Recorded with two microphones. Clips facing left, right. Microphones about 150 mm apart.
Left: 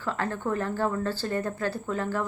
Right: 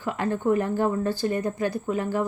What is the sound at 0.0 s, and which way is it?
Speech, 15° right (ahead or behind).